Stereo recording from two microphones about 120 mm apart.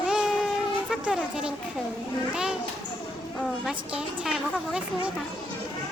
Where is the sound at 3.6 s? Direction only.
5° right (ahead or behind).